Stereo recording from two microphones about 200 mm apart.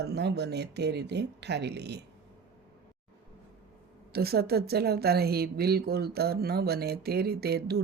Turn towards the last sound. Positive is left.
turn(degrees=-50)  # may be behind; listen again after turning